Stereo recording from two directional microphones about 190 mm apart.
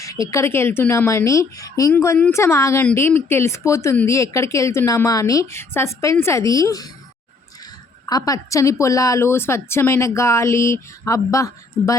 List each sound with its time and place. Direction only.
0.0 s speech: 15° left (ahead or behind)
8.0 s speech: 20° left (ahead or behind)